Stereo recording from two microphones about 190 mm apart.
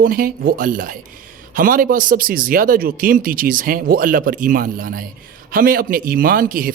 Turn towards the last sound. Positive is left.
turn(degrees=-45)  # may be behind; listen again after turning